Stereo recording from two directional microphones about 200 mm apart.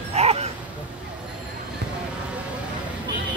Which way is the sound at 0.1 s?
30° right (ahead or behind).